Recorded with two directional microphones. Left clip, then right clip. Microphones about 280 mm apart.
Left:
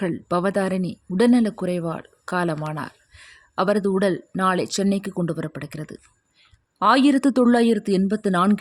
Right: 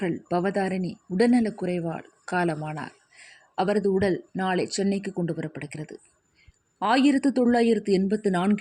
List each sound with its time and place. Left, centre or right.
0.0 s speech: centre
2.7 s a sound: centre
3.5 s speech: left
7.6 s speech: left
7.9 s speech: left